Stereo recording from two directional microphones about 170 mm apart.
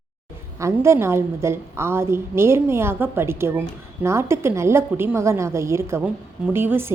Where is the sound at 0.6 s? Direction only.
15° right (ahead or behind).